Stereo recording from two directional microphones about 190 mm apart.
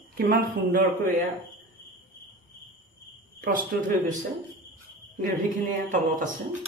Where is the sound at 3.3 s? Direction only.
50° right (ahead or behind).